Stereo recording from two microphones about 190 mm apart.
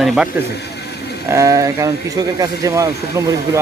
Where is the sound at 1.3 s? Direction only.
15° right (ahead or behind).